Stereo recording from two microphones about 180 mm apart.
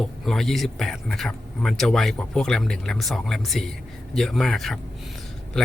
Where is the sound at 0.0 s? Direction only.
Centre (ahead or behind).